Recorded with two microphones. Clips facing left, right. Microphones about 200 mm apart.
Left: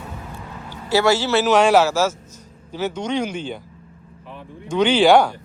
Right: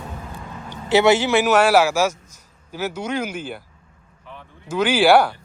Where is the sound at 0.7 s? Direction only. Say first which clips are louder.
Right 2 dB; 20° right (ahead or behind).